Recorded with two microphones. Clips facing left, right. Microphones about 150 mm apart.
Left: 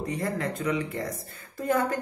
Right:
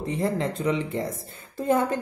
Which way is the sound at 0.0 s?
25° right (ahead or behind).